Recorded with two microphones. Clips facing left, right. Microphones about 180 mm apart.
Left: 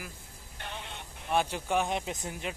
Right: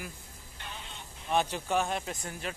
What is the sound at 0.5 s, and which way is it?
Sheep, 60° left (ahead or behind).